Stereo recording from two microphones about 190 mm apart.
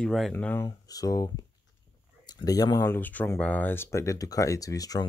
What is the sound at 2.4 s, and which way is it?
Speech, 20° left (ahead or behind).